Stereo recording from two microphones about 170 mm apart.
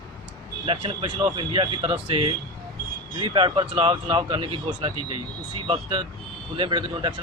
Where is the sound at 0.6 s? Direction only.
35° right (ahead or behind).